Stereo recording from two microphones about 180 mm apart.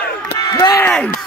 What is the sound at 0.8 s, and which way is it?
Speech, 5° left (ahead or behind).